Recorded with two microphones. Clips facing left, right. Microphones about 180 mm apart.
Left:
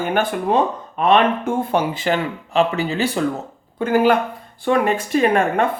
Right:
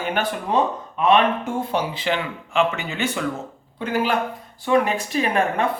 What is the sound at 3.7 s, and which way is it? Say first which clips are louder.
Speech: left 6 dB; 50° left (ahead or behind).